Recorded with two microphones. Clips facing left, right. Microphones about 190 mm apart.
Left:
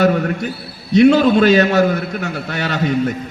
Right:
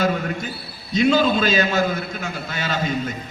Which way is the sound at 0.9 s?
65° left (ahead or behind).